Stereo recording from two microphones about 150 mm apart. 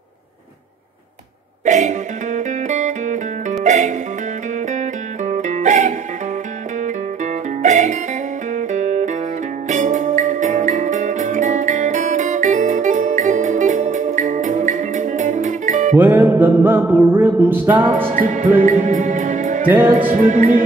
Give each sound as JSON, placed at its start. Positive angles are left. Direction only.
{"t": 1.7, "sound": "music", "side_deg": -55}
{"t": 5.2, "sound": "music", "side_deg": -55}
{"t": 7.6, "sound": "music", "side_deg": -55}
{"t": 16.0, "sound": "music", "side_deg": -10}
{"t": 18.1, "sound": "music", "side_deg": -60}